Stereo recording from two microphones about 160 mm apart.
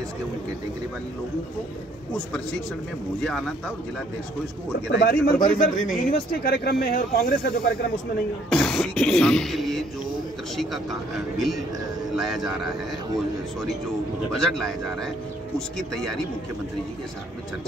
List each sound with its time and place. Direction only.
3.2 s beatboxing: 5° left (ahead or behind)
4.9 s speech: 70° left (ahead or behind)
8.5 s beatboxing: centre (ahead or behind)
14.3 s beatboxing: centre (ahead or behind)